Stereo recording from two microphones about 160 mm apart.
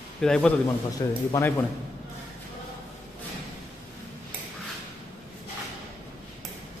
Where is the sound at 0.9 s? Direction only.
20° left (ahead or behind).